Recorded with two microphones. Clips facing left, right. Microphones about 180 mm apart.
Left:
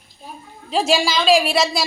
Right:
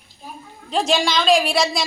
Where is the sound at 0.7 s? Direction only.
5° left (ahead or behind).